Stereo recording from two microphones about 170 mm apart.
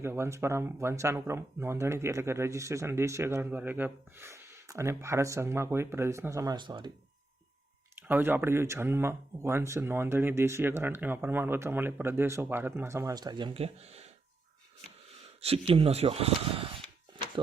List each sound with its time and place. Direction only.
0.0 s speech: 15° right (ahead or behind)
8.0 s speech: 10° right (ahead or behind); by 14.1 s 40° right (ahead or behind)
15.2 s speech: 35° right (ahead or behind)